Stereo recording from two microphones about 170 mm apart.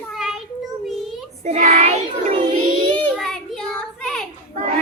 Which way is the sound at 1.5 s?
45° right (ahead or behind).